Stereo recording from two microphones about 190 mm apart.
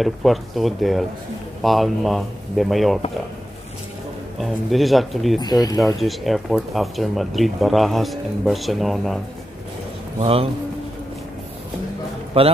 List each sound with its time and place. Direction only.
0.0 s speech: centre (ahead or behind)
4.4 s speech: centre (ahead or behind)
5.4 s speech: 20° left (ahead or behind)
5.9 s speech: centre (ahead or behind)
10.1 s a man's voice: 30° right (ahead or behind)
12.4 s a man's voice: 30° right (ahead or behind)